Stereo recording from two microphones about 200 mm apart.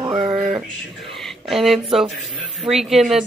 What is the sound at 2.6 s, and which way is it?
Speech, centre (ahead or behind).